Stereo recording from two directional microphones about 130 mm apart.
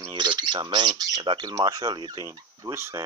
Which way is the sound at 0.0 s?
35° right (ahead or behind).